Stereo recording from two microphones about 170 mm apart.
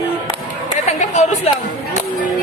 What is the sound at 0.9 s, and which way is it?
Chatter, 40° left (ahead or behind).